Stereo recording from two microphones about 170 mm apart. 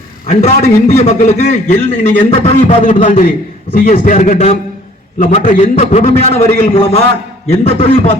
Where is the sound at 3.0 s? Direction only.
50° left (ahead or behind).